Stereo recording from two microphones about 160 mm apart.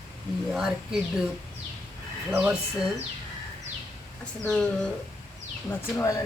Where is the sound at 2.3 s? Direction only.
10° right (ahead or behind).